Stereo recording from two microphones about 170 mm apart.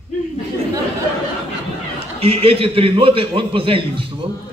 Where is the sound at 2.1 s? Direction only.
35° right (ahead or behind).